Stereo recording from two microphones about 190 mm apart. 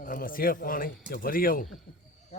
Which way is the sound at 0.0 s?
45° left (ahead or behind).